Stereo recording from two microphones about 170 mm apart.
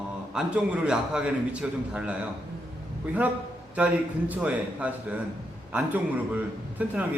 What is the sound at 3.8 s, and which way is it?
A man's voice, 10° right (ahead or behind).